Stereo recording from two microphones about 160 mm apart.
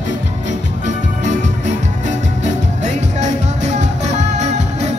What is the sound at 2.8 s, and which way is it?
Music, 45° right (ahead or behind).